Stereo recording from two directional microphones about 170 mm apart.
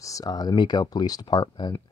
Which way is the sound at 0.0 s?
20° left (ahead or behind).